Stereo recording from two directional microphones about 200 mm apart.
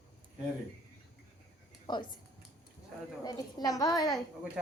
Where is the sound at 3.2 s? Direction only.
20° left (ahead or behind).